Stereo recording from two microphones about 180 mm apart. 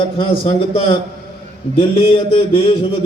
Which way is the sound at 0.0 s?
30° left (ahead or behind).